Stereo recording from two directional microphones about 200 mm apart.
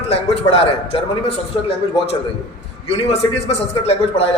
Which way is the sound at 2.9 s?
30° left (ahead or behind).